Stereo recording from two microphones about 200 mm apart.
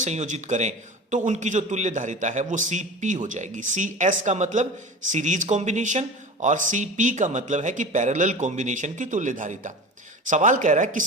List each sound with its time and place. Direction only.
0.0 s a man's voice: 35° right (ahead or behind)